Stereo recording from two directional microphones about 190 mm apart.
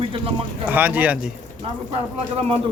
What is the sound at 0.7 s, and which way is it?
Speech, 10° right (ahead or behind).